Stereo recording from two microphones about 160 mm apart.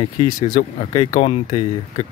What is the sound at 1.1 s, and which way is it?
Speech, 45° left (ahead or behind).